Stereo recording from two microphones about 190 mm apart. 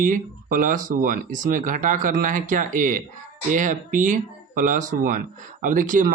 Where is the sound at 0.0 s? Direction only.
45° right (ahead or behind).